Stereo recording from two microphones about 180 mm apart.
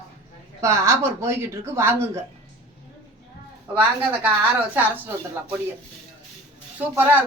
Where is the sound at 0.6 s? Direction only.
15° right (ahead or behind).